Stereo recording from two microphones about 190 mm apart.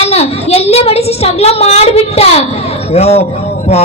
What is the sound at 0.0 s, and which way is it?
A man's voice, 35° left (ahead or behind).